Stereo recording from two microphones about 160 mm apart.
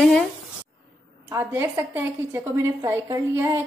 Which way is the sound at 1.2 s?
20° right (ahead or behind).